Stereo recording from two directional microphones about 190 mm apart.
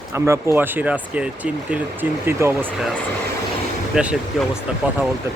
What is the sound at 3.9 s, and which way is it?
Speech, 5° right (ahead or behind).